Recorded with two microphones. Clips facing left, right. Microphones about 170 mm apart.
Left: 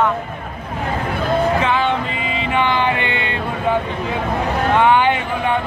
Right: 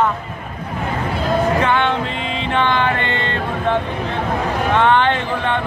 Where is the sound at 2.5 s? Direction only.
15° left (ahead or behind).